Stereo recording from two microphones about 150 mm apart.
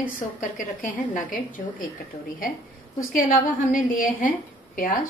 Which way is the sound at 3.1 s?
65° left (ahead or behind).